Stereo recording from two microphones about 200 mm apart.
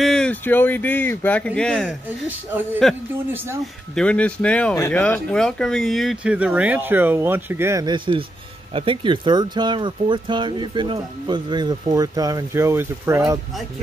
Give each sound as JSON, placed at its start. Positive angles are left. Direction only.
{"t": 0.0, "sound": "speech", "side_deg": 5}